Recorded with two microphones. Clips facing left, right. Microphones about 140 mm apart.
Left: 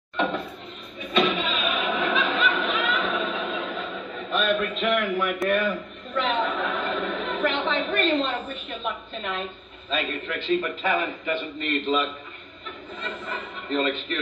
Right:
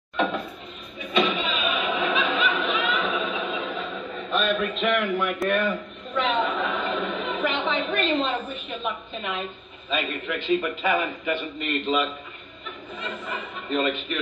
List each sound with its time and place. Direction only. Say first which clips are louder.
1.1 s choir: even; 10° right (ahead or behind)
2.1 s snicker: even; 5° right (ahead or behind)
9.8 s a man's voice: right 1 dB; 10° right (ahead or behind)